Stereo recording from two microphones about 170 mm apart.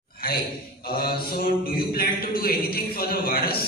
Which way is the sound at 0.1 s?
60° left (ahead or behind).